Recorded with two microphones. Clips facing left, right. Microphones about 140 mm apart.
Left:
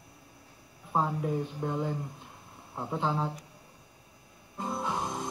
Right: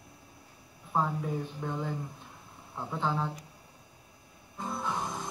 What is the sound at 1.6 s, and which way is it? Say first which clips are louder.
Speech: left 3 dB; 35° left (ahead or behind).